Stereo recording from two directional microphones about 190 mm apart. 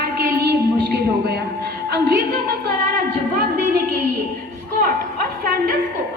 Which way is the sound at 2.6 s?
55° right (ahead or behind).